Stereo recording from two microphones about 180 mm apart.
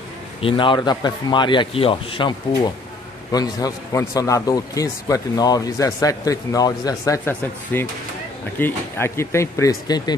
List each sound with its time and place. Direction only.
0.4 s a man's voice: 30° left (ahead or behind)